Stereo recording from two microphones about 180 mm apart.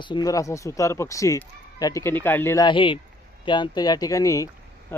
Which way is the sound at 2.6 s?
25° left (ahead or behind).